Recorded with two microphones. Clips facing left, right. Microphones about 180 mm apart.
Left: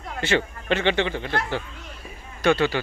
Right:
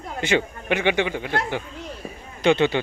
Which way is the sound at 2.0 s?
45° right (ahead or behind).